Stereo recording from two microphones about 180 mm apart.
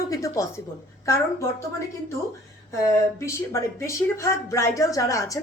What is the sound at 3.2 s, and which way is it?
A woman's voice, 15° left (ahead or behind).